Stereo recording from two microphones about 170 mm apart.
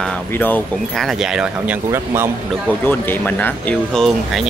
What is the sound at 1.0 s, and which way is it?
A man's voice, 5° right (ahead or behind).